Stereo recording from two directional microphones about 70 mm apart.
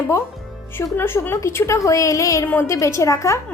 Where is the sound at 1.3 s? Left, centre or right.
Left.